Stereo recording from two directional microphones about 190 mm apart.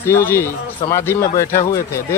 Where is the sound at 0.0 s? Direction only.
10° left (ahead or behind).